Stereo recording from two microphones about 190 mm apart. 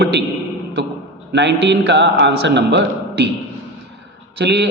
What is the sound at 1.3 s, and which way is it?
A man's voice, 70° right (ahead or behind).